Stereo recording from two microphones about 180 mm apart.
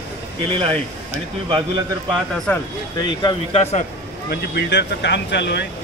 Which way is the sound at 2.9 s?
25° left (ahead or behind).